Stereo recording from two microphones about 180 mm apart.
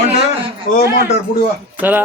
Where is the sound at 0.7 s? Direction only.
45° left (ahead or behind).